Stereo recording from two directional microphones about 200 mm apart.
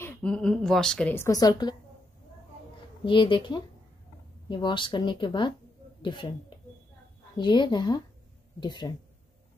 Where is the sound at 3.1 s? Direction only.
25° left (ahead or behind).